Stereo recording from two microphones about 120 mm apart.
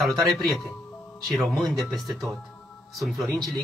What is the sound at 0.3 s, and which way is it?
Speech, centre (ahead or behind).